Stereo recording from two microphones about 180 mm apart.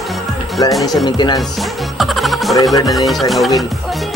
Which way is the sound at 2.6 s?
20° left (ahead or behind).